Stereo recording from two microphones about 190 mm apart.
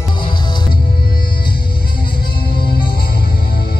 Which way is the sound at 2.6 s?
25° left (ahead or behind).